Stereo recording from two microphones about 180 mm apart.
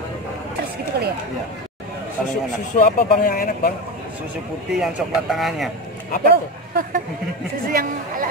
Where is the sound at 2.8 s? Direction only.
55° left (ahead or behind).